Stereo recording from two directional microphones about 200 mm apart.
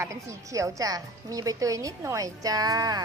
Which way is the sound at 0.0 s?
15° right (ahead or behind).